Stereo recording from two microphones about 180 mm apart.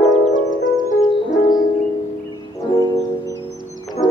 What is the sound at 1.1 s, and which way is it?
Music, 25° left (ahead or behind).